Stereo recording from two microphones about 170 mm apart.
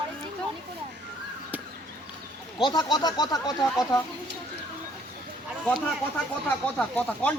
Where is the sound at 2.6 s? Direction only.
25° left (ahead or behind).